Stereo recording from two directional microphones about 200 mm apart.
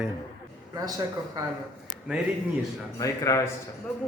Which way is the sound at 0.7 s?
20° right (ahead or behind).